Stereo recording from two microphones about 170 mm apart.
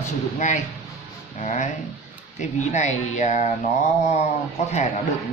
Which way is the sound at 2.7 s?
40° left (ahead or behind).